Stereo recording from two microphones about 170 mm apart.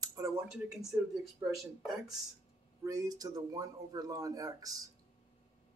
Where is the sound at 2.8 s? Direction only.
20° right (ahead or behind).